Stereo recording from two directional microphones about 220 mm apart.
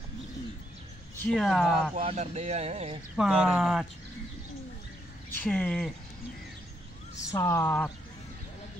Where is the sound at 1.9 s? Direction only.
30° right (ahead or behind).